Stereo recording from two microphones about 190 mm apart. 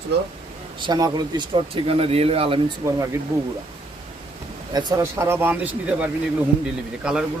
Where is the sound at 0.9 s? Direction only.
20° right (ahead or behind).